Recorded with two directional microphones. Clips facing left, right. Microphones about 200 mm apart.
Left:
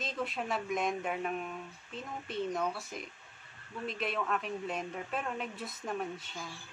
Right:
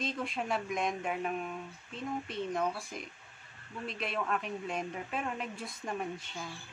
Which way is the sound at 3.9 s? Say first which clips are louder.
Left 1 dB; centre (ahead or behind).